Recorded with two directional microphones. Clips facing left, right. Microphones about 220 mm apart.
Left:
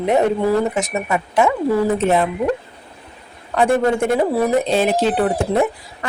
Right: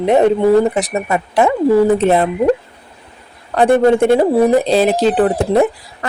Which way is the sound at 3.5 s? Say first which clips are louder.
Right 5 dB; 35° right (ahead or behind).